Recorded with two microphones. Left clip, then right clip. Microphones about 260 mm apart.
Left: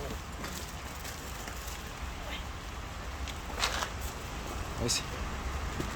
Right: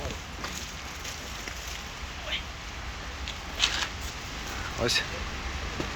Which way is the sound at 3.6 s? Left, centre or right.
Left.